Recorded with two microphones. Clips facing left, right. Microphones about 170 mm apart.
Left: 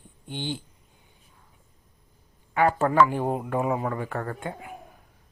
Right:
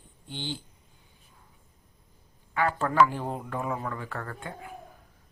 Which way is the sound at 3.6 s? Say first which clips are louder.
Left 6 dB; 20° left (ahead or behind).